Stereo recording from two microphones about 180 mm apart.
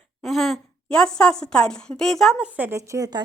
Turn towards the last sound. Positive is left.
turn(degrees=-20)  # may be behind; listen again after turning